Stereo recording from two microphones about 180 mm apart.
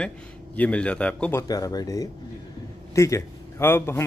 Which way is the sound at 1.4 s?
20° left (ahead or behind).